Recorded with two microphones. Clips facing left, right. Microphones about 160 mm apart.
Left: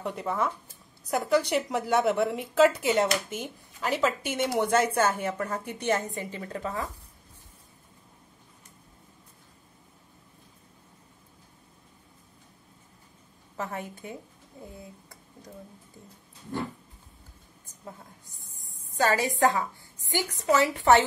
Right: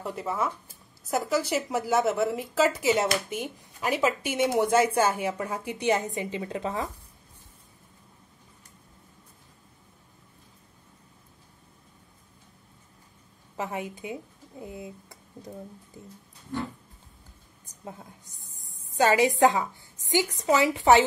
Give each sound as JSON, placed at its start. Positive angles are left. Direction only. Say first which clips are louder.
{"t": 0.0, "sound": "a woman's voice", "louder": "even", "side_deg": 0}
{"t": 13.6, "sound": "a woman's voice", "louder": "right 2 dB", "side_deg": -15}
{"t": 17.8, "sound": "a woman's voice", "louder": "right 3 dB", "side_deg": -20}